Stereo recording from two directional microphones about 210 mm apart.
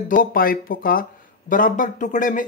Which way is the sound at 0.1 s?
40° left (ahead or behind).